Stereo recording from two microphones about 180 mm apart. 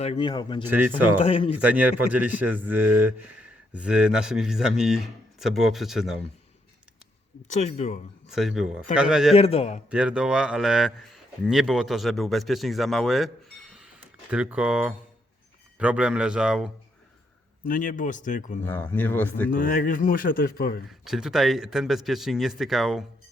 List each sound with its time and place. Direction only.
0.0 s speech: 30° left (ahead or behind)
0.6 s speech: 10° right (ahead or behind)
1.2 s speech: 30° left (ahead or behind)
1.6 s speech: 10° right (ahead or behind)
7.5 s speech: 40° left (ahead or behind)
8.3 s speech: centre (ahead or behind)
9.3 s speech: 35° left (ahead or behind)
9.9 s speech: 5° right (ahead or behind)
17.7 s speech: 45° left (ahead or behind)
18.6 s speech: 10° left (ahead or behind)
19.5 s speech: 45° left (ahead or behind)
21.0 s speech: centre (ahead or behind)